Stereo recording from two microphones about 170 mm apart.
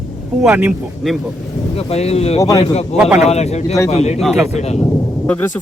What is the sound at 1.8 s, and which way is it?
Speech, 40° left (ahead or behind).